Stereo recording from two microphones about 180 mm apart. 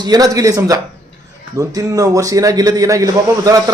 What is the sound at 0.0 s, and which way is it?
Speech, 20° right (ahead or behind).